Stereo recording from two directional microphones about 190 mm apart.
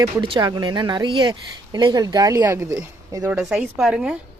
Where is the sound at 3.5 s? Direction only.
5° right (ahead or behind).